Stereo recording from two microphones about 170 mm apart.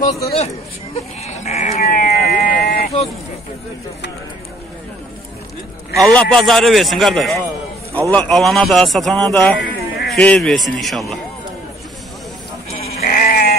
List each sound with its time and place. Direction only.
0.0 s speech: 35° left (ahead or behind)
1.2 s sheep: 40° left (ahead or behind)
1.8 s a sound: 55° left (ahead or behind)
5.9 s a man's voice: centre (ahead or behind)
13.0 s sheep: 50° left (ahead or behind)